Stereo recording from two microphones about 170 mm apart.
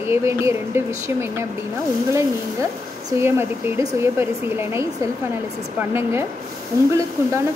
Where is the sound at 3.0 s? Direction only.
15° right (ahead or behind).